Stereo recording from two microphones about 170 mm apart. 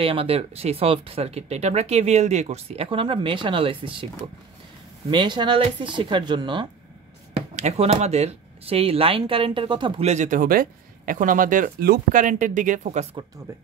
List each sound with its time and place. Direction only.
0.0 s speech: 35° right (ahead or behind)
5.1 s speech: 30° right (ahead or behind)
7.3 s speech: 40° right (ahead or behind)